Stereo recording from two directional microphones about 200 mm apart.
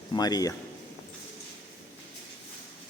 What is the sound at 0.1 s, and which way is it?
Speech, 20° left (ahead or behind).